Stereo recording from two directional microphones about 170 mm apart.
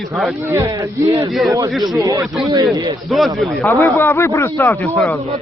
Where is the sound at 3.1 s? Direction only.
Centre (ahead or behind).